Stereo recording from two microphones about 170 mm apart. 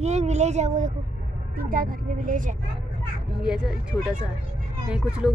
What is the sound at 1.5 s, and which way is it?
A woman's voice, 55° right (ahead or behind).